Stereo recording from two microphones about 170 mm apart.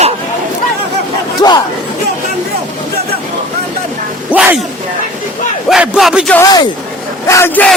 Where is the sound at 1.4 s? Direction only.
25° left (ahead or behind).